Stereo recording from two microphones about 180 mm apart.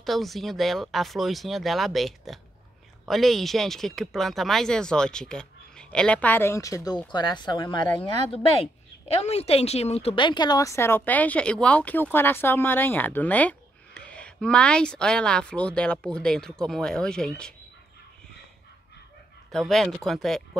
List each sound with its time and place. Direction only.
0.0 s speech: centre (ahead or behind)
19.5 s speech: centre (ahead or behind)